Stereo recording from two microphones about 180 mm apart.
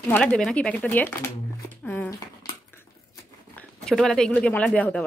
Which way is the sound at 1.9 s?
10° left (ahead or behind).